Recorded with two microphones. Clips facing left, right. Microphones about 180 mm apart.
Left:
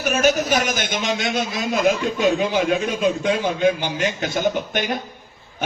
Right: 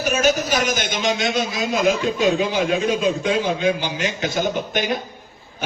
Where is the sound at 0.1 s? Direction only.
50° left (ahead or behind).